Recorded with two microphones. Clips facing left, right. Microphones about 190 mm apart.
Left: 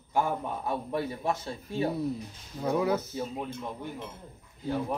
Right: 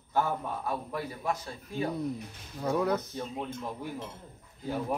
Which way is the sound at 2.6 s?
5° left (ahead or behind).